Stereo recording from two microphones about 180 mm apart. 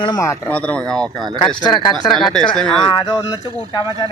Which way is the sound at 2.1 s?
Centre (ahead or behind).